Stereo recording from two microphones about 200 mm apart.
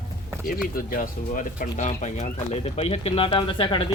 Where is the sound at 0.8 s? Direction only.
45° left (ahead or behind); by 3.8 s 25° left (ahead or behind).